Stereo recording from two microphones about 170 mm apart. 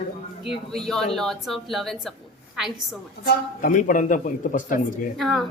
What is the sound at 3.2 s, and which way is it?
A man's voice, 60° left (ahead or behind).